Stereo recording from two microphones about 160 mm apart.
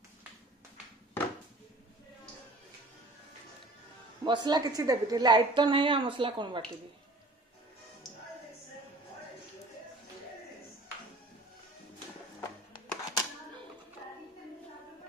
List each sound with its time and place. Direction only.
4.2 s a woman's voice: 25° right (ahead or behind)
12.4 s music: 25° left (ahead or behind)